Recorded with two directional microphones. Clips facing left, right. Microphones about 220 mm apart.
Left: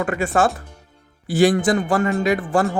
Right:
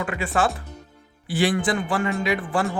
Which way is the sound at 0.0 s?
45° left (ahead or behind).